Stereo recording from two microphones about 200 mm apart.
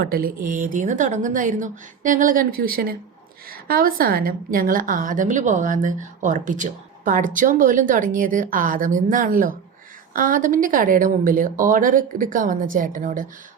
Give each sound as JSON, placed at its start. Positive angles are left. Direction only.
{"t": 0.0, "sound": "a woman's voice", "side_deg": -45}